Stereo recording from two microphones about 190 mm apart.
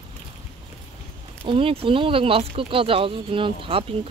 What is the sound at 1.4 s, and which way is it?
Speech, 30° right (ahead or behind).